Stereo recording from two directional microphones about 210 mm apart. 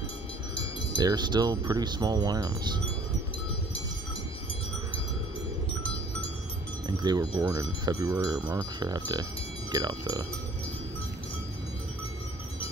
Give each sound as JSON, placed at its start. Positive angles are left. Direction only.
{"t": 0.9, "sound": "speech", "side_deg": -20}
{"t": 6.9, "sound": "speech", "side_deg": -20}